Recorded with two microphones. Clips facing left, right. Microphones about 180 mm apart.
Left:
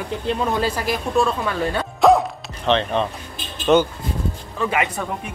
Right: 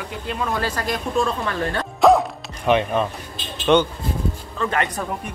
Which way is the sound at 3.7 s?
5° left (ahead or behind).